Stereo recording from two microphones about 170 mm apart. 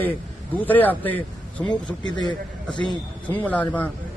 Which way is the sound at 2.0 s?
25° left (ahead or behind).